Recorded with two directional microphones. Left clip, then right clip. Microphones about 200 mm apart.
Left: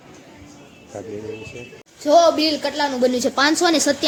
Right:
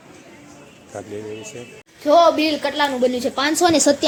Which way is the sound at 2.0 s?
20° left (ahead or behind).